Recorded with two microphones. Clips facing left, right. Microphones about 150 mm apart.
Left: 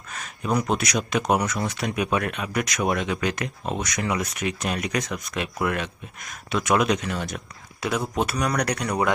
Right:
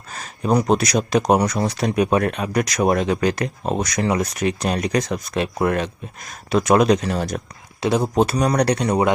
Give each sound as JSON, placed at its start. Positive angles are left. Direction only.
{"t": 0.1, "sound": "speech", "side_deg": -40}
{"t": 7.8, "sound": "speech", "side_deg": -30}